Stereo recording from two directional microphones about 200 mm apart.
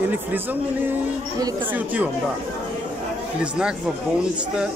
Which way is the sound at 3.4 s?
5° right (ahead or behind).